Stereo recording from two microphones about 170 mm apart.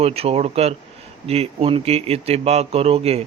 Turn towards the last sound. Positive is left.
turn(degrees=-35)  # may be behind; listen again after turning